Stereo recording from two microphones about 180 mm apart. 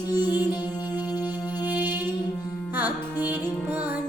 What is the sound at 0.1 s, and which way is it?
Music, 25° left (ahead or behind).